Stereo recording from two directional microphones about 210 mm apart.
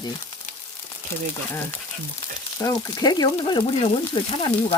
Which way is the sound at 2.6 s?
15° left (ahead or behind).